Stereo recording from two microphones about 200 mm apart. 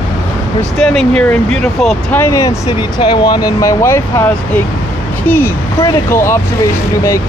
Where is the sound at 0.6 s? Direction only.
Centre (ahead or behind).